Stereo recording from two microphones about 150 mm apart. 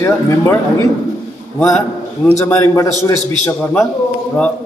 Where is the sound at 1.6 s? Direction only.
5° left (ahead or behind).